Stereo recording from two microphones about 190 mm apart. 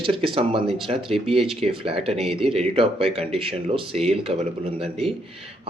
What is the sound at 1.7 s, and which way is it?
Speech, 30° right (ahead or behind).